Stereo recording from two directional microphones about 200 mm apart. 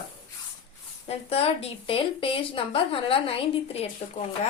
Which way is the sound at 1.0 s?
30° left (ahead or behind).